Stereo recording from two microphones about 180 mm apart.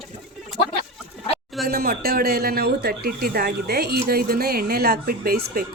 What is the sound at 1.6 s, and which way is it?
Speech, 55° right (ahead or behind).